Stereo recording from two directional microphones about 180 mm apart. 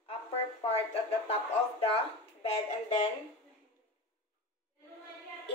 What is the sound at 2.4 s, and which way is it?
Speech, 35° left (ahead or behind).